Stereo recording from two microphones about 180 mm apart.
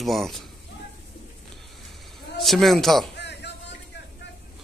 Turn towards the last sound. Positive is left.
turn(degrees=75)  # may be behind; listen again after turning